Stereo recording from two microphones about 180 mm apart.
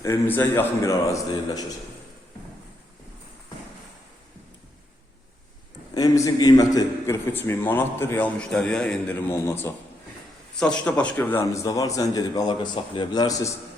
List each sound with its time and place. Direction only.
0.0 s a man's voice: 15° left (ahead or behind)
5.9 s a man's voice: 20° left (ahead or behind)